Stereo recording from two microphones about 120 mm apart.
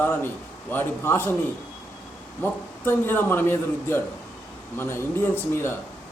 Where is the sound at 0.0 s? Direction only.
15° left (ahead or behind).